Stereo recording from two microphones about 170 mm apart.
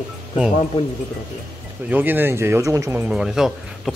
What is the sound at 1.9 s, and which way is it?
Speech, 10° right (ahead or behind).